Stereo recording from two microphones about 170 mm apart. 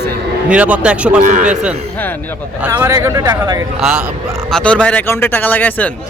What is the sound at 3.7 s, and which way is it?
Speech, 5° right (ahead or behind).